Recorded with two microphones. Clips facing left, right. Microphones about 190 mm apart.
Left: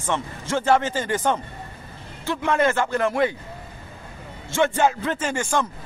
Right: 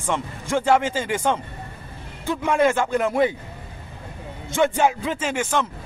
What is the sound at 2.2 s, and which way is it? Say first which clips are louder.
A man's voice: right 2 dB; 15° right (ahead or behind).